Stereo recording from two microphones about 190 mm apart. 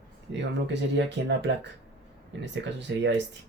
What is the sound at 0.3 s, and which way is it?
Speech, 65° right (ahead or behind).